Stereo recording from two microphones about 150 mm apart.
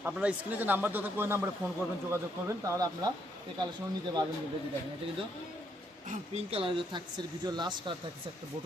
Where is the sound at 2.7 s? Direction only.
25° right (ahead or behind).